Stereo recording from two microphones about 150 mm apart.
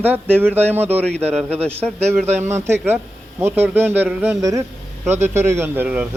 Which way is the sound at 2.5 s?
15° right (ahead or behind).